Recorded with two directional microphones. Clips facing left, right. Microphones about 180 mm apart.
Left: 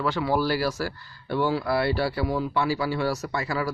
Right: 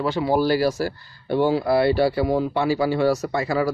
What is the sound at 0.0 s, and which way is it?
Speech, 20° right (ahead or behind).